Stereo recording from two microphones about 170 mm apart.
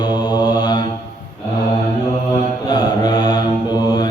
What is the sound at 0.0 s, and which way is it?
Mantra, 25° left (ahead or behind).